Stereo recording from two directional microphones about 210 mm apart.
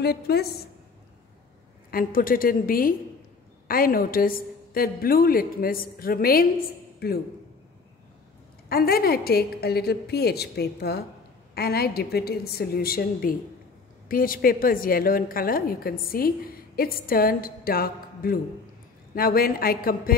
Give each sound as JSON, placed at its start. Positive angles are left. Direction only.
{"t": 0.0, "sound": "a woman's voice", "side_deg": 50}
{"t": 1.9, "sound": "a woman's voice", "side_deg": 45}
{"t": 8.6, "sound": "a woman's voice", "side_deg": 45}